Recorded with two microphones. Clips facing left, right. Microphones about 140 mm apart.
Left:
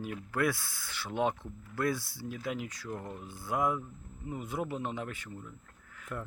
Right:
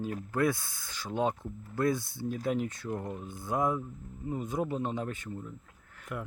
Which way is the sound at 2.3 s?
40° right (ahead or behind).